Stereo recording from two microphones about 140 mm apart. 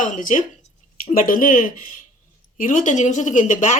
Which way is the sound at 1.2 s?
80° left.